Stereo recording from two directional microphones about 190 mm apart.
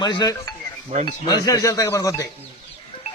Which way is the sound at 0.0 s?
20° left (ahead or behind).